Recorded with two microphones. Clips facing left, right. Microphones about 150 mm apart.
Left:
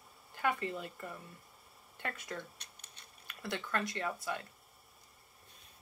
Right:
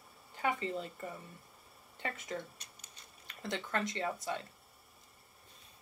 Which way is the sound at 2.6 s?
65° left (ahead or behind).